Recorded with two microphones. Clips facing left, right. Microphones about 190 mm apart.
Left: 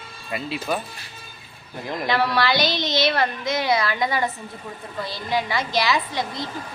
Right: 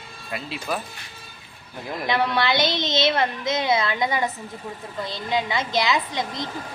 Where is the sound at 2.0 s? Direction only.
20° right (ahead or behind).